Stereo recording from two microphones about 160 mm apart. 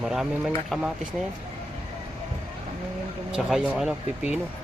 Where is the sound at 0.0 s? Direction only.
5° right (ahead or behind).